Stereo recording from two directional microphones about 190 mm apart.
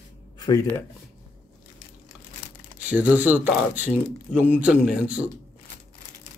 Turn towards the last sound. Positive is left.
turn(degrees=-5)  # may be behind; listen again after turning